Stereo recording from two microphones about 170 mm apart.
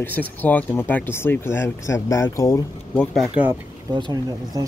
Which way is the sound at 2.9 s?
Centre (ahead or behind).